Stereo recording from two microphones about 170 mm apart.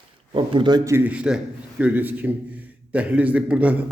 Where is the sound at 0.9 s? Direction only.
10° right (ahead or behind).